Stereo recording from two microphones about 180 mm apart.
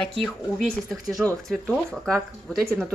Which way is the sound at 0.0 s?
Centre (ahead or behind).